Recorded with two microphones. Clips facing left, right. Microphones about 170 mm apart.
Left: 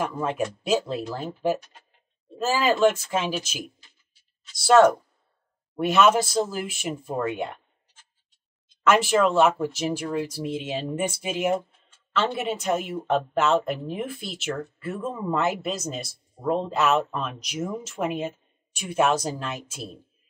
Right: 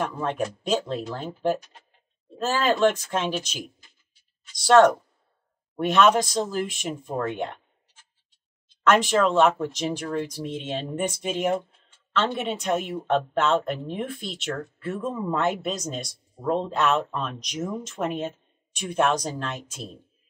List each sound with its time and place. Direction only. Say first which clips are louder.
0.0 s speech: left 1 dB; 5° left (ahead or behind)
8.8 s speech: even; 5° left (ahead or behind)